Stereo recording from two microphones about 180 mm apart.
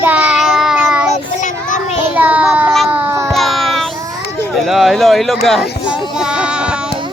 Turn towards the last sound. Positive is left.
turn(degrees=-5)  # may be behind; listen again after turning